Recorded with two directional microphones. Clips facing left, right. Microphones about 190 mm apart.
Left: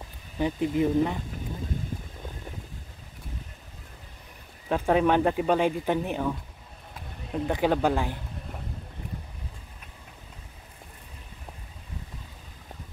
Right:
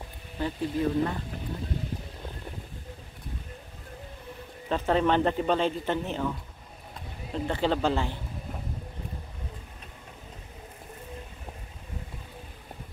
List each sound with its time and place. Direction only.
0.4 s speech: 15° left (ahead or behind)
4.6 s speech: 10° left (ahead or behind)
7.3 s speech: 10° left (ahead or behind)